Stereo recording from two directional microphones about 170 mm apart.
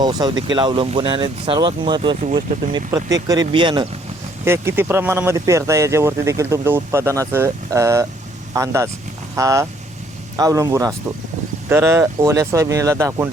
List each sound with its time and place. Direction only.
0.0 s speech: 25° right (ahead or behind)
4.4 s speech: 15° right (ahead or behind)